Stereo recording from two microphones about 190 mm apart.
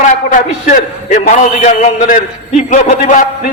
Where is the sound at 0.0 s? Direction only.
45° left (ahead or behind).